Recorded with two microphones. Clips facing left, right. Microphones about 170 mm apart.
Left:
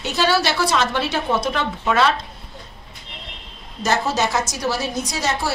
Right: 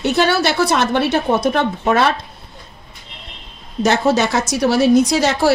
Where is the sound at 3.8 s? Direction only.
60° right (ahead or behind); by 5.5 s 80° right.